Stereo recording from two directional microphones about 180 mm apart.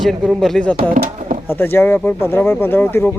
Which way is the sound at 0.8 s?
55° right (ahead or behind).